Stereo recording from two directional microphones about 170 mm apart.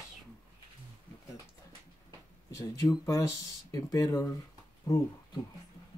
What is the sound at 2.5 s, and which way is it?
Speech, 20° left (ahead or behind).